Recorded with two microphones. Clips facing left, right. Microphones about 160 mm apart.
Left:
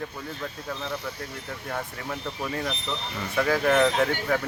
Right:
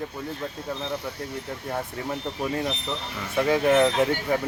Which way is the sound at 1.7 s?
20° right (ahead or behind).